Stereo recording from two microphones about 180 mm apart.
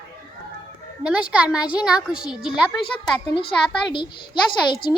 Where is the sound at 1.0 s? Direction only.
5° right (ahead or behind).